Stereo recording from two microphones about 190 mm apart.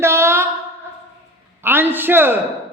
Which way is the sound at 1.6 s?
10° right (ahead or behind).